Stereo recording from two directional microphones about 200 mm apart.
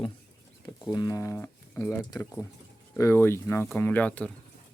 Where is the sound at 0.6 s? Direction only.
20° left (ahead or behind).